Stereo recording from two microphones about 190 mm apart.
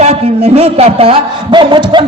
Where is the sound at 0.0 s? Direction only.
35° right (ahead or behind).